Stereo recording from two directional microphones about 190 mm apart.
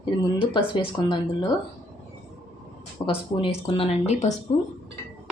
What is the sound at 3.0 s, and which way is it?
A woman's voice, 25° left (ahead or behind).